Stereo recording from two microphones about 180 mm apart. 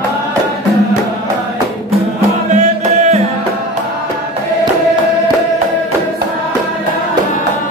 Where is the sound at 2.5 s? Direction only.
40° right (ahead or behind).